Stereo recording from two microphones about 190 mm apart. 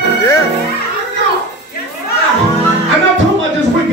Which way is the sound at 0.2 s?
15° left (ahead or behind).